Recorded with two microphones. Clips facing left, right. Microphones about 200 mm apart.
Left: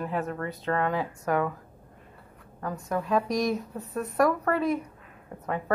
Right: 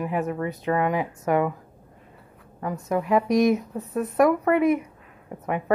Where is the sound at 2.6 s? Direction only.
20° right (ahead or behind).